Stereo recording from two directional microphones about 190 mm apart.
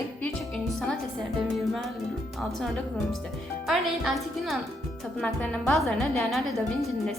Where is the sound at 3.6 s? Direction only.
Centre (ahead or behind).